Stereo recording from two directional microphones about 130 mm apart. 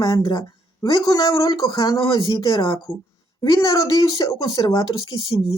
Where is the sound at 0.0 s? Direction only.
30° left (ahead or behind).